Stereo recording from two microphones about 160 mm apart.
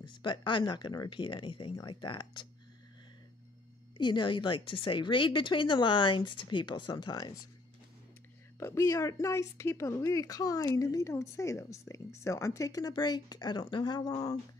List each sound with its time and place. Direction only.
0.0 s a woman's voice: 30° left (ahead or behind)
4.0 s a woman's voice: 30° left (ahead or behind)
8.5 s a woman's voice: 20° left (ahead or behind)